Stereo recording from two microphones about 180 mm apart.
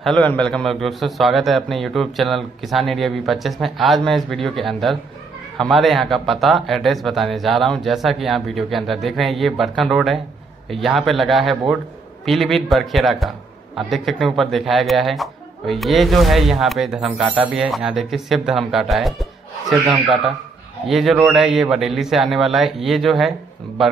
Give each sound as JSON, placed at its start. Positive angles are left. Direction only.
{"t": 0.0, "sound": "speech", "side_deg": 5}
{"t": 19.8, "sound": "speech", "side_deg": -25}
{"t": 20.8, "sound": "speech", "side_deg": 0}